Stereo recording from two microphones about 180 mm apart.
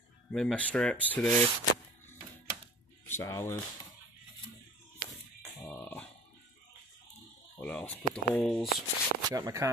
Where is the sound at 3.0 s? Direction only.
15° left (ahead or behind).